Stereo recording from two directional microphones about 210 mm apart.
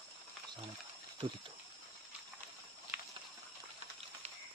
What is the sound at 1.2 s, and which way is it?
Speech, 25° right (ahead or behind).